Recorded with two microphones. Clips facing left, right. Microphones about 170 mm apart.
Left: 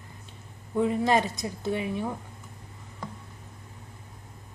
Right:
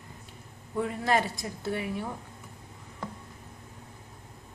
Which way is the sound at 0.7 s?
20° left (ahead or behind).